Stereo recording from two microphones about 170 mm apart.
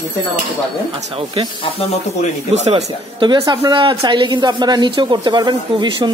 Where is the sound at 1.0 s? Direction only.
35° right (ahead or behind).